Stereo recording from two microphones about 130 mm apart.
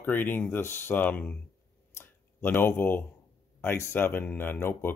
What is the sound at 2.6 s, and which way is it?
Speech, 15° left (ahead or behind).